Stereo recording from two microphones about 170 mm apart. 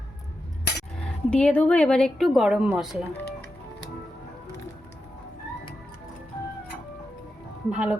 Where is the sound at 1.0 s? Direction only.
5° left (ahead or behind).